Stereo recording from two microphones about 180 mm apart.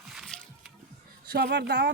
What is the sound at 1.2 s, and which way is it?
Speech, 65° right (ahead or behind).